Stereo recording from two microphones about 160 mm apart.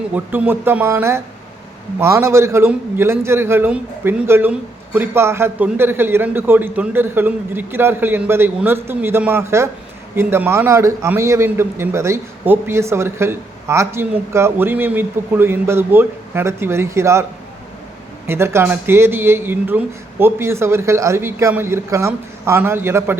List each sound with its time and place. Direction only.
0.1 s a man's voice: 10° right (ahead or behind)
18.3 s a man's voice: 15° right (ahead or behind)